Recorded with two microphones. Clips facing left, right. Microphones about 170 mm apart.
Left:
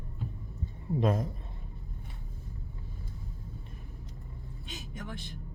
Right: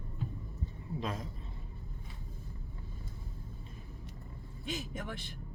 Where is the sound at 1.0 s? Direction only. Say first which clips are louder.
Left 10 dB; 50° left (ahead or behind).